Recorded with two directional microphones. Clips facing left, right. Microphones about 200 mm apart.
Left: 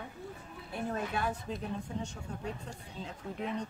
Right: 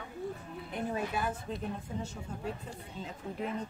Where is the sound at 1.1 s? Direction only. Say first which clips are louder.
Even; 5° right (ahead or behind).